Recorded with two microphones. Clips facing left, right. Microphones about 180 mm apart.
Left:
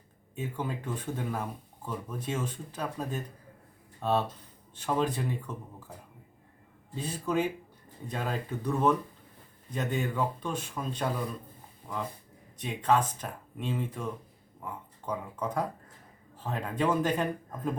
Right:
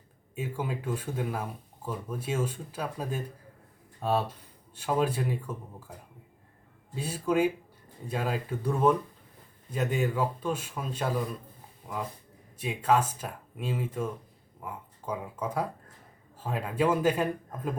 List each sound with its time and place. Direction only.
0.3 s speech: 10° right (ahead or behind)
6.9 s speech: 10° right (ahead or behind)